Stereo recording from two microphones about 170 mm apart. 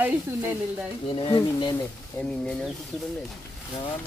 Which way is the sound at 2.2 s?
10° left (ahead or behind).